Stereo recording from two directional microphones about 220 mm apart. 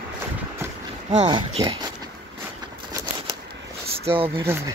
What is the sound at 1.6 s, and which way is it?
Speech, 20° right (ahead or behind).